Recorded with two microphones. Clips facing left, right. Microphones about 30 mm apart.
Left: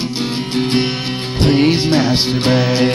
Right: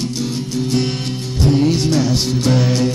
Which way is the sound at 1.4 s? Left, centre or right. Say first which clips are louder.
Left 2 dB; left.